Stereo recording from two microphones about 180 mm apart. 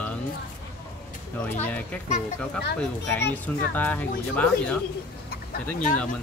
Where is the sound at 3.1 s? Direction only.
10° left (ahead or behind).